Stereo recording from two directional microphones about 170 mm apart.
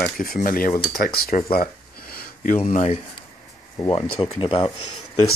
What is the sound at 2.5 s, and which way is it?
Speech, 40° left (ahead or behind).